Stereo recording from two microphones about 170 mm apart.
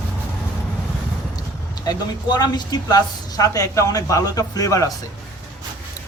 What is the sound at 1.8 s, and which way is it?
A man's voice, 25° left (ahead or behind).